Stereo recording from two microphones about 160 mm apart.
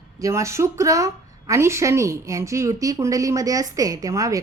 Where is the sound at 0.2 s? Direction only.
20° right (ahead or behind).